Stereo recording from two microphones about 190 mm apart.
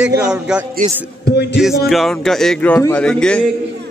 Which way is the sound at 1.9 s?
Centre (ahead or behind).